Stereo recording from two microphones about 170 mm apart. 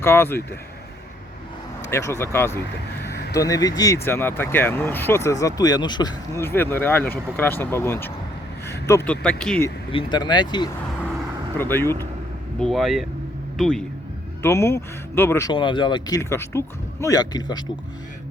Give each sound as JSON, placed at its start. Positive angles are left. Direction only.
{"t": 0.0, "sound": "speech", "side_deg": 15}
{"t": 1.9, "sound": "speech", "side_deg": 15}
{"t": 9.9, "sound": "speech", "side_deg": 30}
{"t": 11.5, "sound": "speech", "side_deg": 15}
{"t": 12.5, "sound": "speech", "side_deg": 0}
{"t": 14.4, "sound": "speech", "side_deg": 15}
{"t": 15.5, "sound": "speech", "side_deg": 30}